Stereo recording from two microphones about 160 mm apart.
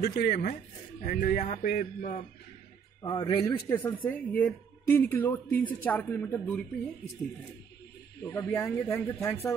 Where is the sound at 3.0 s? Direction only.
25° left (ahead or behind).